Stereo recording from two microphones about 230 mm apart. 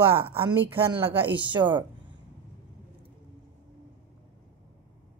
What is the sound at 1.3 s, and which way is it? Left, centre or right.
Speech, right.